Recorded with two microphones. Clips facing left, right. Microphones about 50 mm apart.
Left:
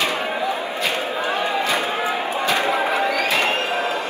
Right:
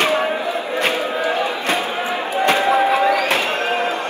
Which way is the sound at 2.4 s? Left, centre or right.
Right.